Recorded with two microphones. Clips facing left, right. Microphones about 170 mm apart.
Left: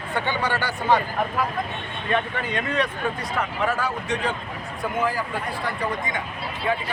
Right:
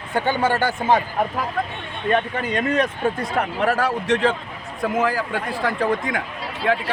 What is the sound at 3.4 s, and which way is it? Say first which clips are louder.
Speech: right 4 dB; 65° right (ahead or behind).